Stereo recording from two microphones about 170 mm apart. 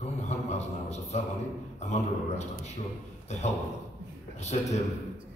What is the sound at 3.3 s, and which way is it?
Speech, 40° left (ahead or behind).